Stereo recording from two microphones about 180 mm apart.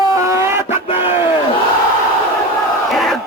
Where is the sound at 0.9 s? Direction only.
30° left (ahead or behind).